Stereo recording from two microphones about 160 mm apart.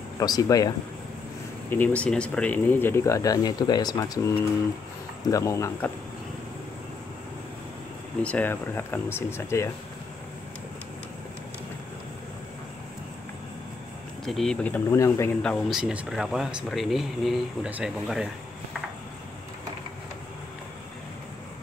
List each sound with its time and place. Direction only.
0.2 s speech: 25° left (ahead or behind)
1.7 s speech: 10° left (ahead or behind)
5.3 s speech: 20° left (ahead or behind)
8.2 s speech: 10° left (ahead or behind)
14.2 s speech: centre (ahead or behind)
15.8 s speech: 5° right (ahead or behind)